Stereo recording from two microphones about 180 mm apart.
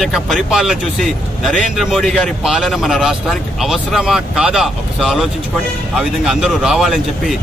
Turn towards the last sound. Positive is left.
turn(degrees=0)  # may be behind; listen again after turning